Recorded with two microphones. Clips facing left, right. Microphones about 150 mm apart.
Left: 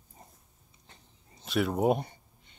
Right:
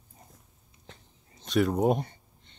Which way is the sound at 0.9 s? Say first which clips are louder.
Right 7 dB; 90° right.